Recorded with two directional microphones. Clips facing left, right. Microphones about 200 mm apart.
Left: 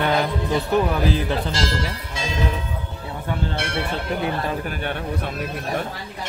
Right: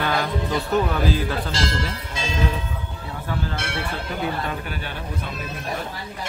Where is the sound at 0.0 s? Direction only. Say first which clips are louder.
Left 3 dB; 20° left (ahead or behind).